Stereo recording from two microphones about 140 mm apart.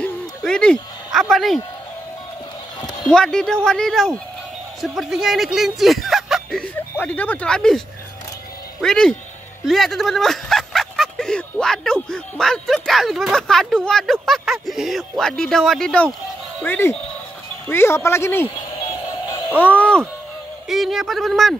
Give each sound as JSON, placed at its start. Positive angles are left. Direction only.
{"t": 0.4, "sound": "a sound", "side_deg": 5}
{"t": 1.2, "sound": "speech", "side_deg": 0}
{"t": 2.8, "sound": "a sound", "side_deg": 30}
{"t": 3.1, "sound": "speech", "side_deg": 5}
{"t": 6.6, "sound": "speech", "side_deg": 10}
{"t": 8.8, "sound": "speech", "side_deg": 5}
{"t": 19.6, "sound": "speech", "side_deg": 10}
{"t": 20.6, "sound": "speech", "side_deg": 0}